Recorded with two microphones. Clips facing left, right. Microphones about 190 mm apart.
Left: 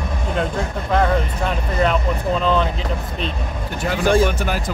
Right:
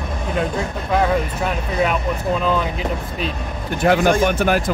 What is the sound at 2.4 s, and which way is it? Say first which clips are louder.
Speech: left 1 dB; 10° right (ahead or behind).